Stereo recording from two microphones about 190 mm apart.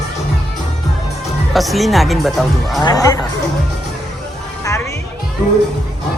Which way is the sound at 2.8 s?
20° left (ahead or behind).